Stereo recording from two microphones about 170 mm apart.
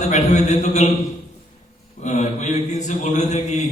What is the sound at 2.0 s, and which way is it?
A man's voice, 45° left (ahead or behind).